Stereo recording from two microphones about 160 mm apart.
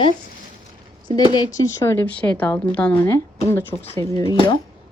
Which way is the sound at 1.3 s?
25° left (ahead or behind).